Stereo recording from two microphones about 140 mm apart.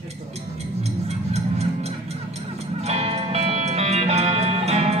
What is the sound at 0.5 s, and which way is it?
Music, 50° right (ahead or behind).